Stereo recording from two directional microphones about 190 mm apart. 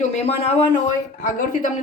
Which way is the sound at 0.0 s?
35° left (ahead or behind).